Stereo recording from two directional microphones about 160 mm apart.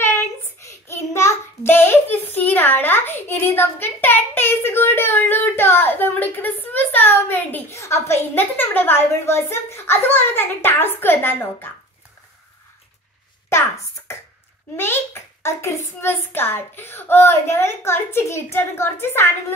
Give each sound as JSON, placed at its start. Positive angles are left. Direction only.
{"t": 0.0, "sound": "a sound", "side_deg": 15}
{"t": 6.3, "sound": "a woman's voice", "side_deg": 10}
{"t": 15.4, "sound": "a woman's voice", "side_deg": 15}